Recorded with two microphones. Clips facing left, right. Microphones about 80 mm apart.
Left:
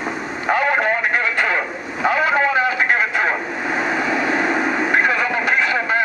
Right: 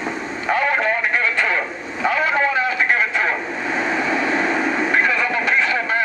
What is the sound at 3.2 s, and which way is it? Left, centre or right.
Vehicle, left.